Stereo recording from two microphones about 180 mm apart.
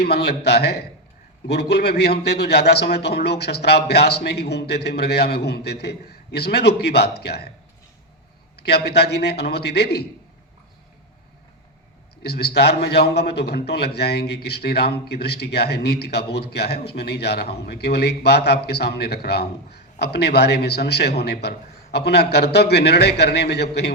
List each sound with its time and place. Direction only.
0.0 s a man's voice: 65° left (ahead or behind)
8.5 s a man's voice: 65° left (ahead or behind)
12.2 s a man's voice: 65° left (ahead or behind)